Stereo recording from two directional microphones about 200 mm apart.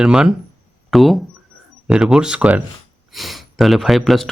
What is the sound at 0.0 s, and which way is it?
Speech, 5° right (ahead or behind).